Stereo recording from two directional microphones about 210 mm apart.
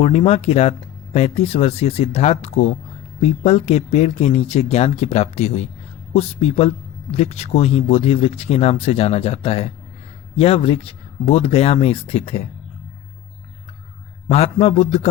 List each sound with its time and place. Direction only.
0.0 s a man's voice: 30° left (ahead or behind)
14.3 s a man's voice: 30° left (ahead or behind)